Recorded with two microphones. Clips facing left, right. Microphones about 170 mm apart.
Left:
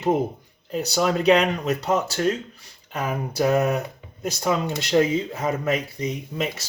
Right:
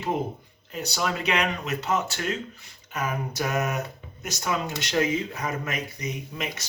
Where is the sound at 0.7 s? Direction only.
35° left (ahead or behind).